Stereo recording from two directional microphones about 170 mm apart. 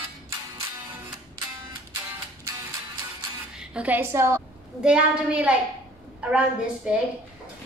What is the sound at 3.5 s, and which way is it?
Speech, 5° right (ahead or behind).